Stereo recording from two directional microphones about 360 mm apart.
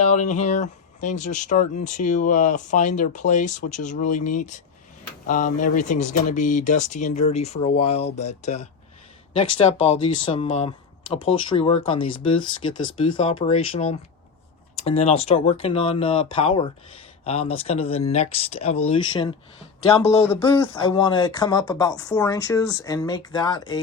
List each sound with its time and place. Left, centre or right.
0.0 s speech: centre